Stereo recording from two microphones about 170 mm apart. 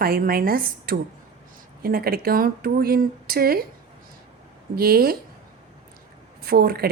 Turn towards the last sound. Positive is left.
turn(degrees=-65)  # may be behind; listen again after turning